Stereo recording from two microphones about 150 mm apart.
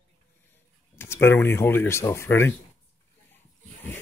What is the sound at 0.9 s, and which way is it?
Speech, 15° left (ahead or behind).